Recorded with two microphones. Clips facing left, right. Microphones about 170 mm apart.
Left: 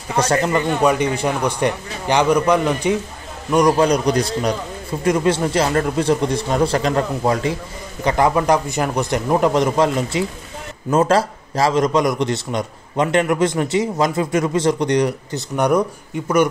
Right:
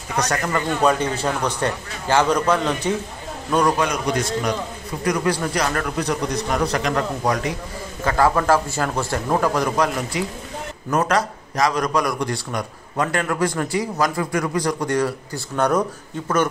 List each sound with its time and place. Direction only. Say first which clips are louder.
0.1 s a man's voice: left 5 dB; 30° left (ahead or behind); by 2.9 s 15° left (ahead or behind)
3.7 s a man's voice: left 6 dB; 35° left (ahead or behind); by 15.8 s 15° left (ahead or behind)